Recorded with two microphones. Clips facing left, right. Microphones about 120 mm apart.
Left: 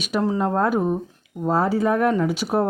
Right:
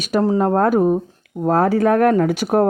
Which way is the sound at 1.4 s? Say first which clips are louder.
Right 5 dB; 55° right (ahead or behind).